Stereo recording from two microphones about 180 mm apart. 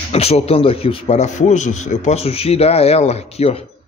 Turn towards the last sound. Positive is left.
turn(degrees=35)  # may be behind; listen again after turning